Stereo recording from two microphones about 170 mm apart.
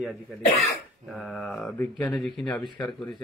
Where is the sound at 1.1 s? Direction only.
Centre (ahead or behind).